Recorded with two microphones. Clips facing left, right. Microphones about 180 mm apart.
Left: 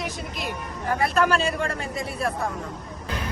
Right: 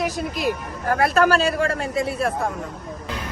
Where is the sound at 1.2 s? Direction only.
35° right (ahead or behind).